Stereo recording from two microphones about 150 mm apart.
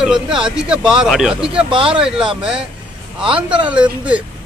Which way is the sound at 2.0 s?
5° right (ahead or behind).